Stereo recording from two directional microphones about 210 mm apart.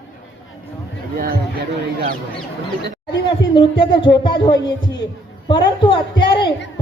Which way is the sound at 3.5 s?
25° left (ahead or behind).